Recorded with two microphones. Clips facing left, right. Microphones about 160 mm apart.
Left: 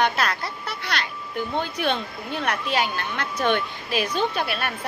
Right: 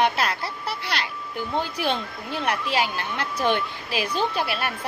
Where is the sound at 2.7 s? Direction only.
30° right (ahead or behind).